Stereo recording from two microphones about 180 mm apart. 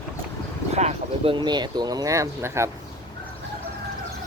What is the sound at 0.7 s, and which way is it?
Speech, 40° right (ahead or behind).